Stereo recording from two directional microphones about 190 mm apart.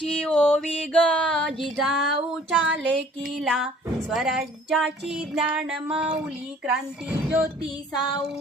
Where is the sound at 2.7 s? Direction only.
70° right (ahead or behind).